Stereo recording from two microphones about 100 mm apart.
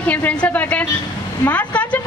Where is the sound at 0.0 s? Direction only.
15° left (ahead or behind).